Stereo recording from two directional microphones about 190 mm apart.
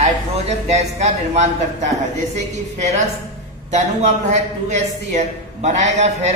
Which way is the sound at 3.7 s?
35° right (ahead or behind).